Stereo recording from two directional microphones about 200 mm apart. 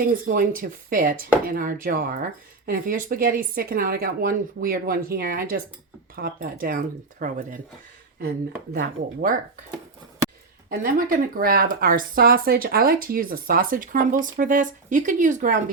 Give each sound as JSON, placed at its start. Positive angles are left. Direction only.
{"t": 0.0, "sound": "speech", "side_deg": -45}
{"t": 8.7, "sound": "speech", "side_deg": -45}
{"t": 10.7, "sound": "speech", "side_deg": -45}